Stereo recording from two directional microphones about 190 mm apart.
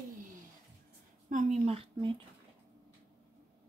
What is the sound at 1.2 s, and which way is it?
Speech, 40° right (ahead or behind).